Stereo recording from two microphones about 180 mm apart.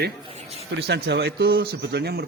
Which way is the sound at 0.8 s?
70° right (ahead or behind).